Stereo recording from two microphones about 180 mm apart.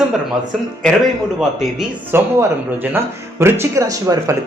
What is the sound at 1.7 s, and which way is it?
Speech, 5° right (ahead or behind).